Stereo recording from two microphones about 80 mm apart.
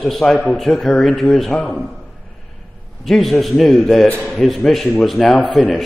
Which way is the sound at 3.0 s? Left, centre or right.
Centre.